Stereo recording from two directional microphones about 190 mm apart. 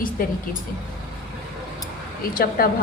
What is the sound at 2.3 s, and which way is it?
Speech, 50° left (ahead or behind).